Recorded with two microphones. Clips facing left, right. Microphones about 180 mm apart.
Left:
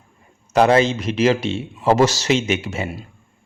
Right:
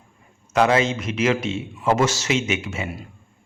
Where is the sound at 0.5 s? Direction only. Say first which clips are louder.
Left 4 dB; 35° left (ahead or behind).